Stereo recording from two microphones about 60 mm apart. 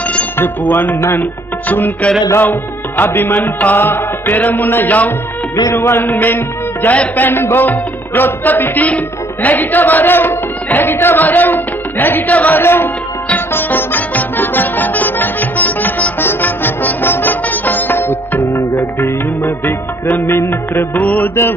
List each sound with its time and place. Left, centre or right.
0.4 s music: left
1.7 s music: left
3.0 s music: left
5.7 s music: left
12.6 s music: left